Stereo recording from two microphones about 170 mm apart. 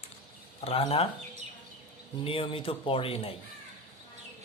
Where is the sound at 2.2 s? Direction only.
35° left (ahead or behind).